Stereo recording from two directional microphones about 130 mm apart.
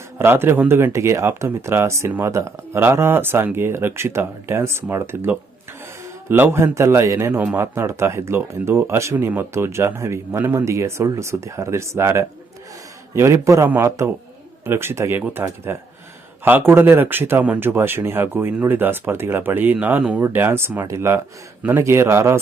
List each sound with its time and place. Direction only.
0.2 s speech: 15° right (ahead or behind)